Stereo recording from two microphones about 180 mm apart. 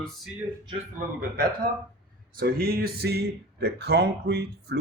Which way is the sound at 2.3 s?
55° right (ahead or behind).